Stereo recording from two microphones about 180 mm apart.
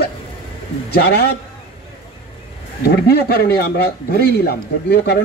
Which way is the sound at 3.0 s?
60° left (ahead or behind).